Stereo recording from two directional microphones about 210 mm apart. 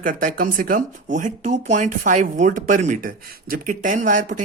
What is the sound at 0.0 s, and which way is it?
Speech, 40° right (ahead or behind).